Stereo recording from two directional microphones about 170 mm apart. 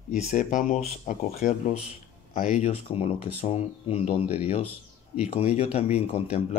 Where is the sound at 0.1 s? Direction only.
45° left (ahead or behind).